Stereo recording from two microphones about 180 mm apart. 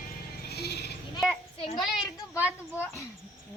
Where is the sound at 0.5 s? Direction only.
65° left (ahead or behind).